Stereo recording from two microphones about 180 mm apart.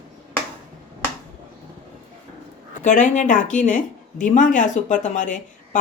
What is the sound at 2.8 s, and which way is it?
A woman's voice, 45° left (ahead or behind).